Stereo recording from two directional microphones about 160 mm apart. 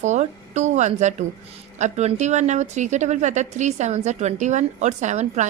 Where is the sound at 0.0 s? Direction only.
45° right (ahead or behind).